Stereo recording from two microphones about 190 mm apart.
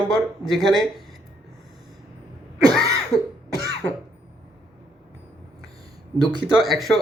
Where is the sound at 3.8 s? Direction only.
10° left (ahead or behind).